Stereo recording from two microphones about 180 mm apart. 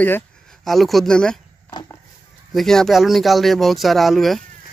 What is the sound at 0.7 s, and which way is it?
Speech, centre (ahead or behind).